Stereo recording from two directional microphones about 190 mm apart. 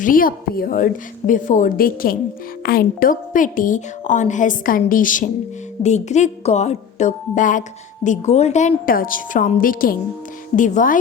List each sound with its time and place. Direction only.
0.0 s a woman's voice: 45° left (ahead or behind)